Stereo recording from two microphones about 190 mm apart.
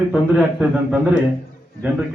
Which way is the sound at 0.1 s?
5° right (ahead or behind).